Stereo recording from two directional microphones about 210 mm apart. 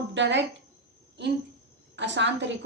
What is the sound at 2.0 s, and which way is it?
Speech, 60° right (ahead or behind).